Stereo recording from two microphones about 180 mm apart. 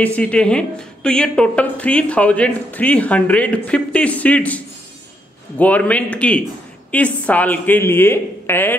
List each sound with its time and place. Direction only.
0.0 s speech: 5° left (ahead or behind)
5.6 s speech: 10° left (ahead or behind)